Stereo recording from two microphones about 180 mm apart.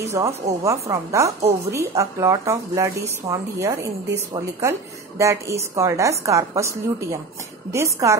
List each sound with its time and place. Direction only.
0.0 s a woman's voice: 15° right (ahead or behind)